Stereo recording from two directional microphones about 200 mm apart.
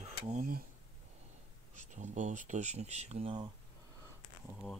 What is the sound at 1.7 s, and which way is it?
Speech, 40° right (ahead or behind).